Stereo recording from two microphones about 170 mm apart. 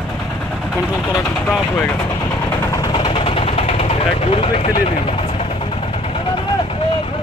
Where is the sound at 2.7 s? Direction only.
20° left (ahead or behind).